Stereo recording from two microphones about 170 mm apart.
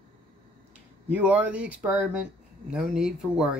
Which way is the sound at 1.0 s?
10° right (ahead or behind).